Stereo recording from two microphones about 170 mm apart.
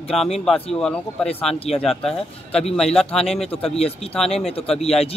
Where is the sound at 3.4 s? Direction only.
35° left (ahead or behind).